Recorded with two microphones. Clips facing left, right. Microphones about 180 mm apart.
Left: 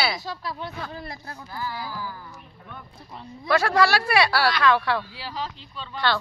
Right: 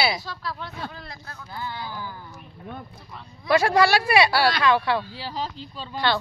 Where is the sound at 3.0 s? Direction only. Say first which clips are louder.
Left 1 dB; 25° left (ahead or behind).